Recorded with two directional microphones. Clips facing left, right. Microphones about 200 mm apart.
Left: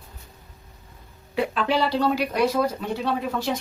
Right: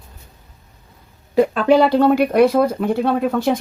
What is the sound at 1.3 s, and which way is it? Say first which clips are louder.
Speech: right 10 dB; 45° right (ahead or behind).